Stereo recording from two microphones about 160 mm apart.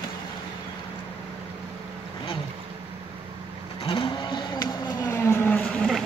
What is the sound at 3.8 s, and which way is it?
Vehicle, 35° left (ahead or behind).